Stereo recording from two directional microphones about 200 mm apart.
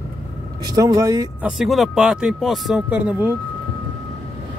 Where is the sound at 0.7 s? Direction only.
15° right (ahead or behind).